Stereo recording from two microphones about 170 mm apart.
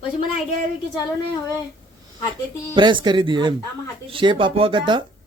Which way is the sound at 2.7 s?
30° right (ahead or behind).